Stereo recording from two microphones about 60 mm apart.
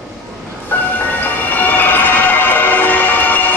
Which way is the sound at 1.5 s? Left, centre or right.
Left.